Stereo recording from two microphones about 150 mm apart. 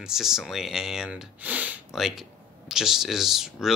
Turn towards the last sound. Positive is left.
turn(degrees=0)  # may be behind; listen again after turning